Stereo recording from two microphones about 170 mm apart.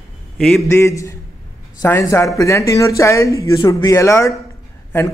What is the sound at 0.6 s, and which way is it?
Speech, 15° left (ahead or behind).